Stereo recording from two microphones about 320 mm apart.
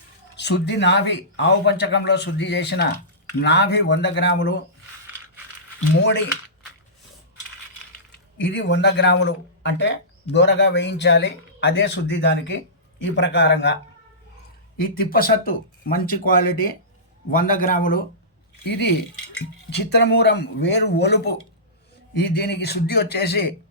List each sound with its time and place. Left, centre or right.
0.3 s speech: left
5.9 s speech: left
8.4 s speech: left
14.8 s speech: left